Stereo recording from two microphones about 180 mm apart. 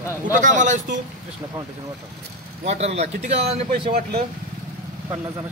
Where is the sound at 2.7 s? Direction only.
35° right (ahead or behind).